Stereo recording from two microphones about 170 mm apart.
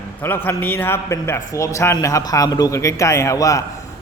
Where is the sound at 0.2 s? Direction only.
10° left (ahead or behind).